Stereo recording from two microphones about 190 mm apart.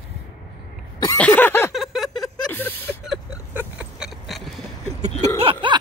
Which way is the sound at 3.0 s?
5° right (ahead or behind).